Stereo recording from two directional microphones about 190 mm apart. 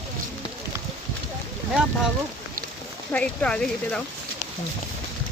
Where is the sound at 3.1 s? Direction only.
5° left (ahead or behind).